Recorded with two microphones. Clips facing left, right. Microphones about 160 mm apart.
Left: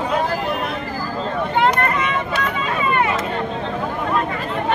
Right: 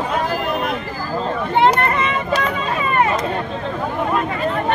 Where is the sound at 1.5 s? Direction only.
30° right (ahead or behind).